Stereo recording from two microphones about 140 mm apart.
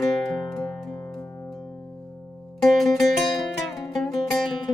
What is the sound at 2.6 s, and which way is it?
Music, centre (ahead or behind).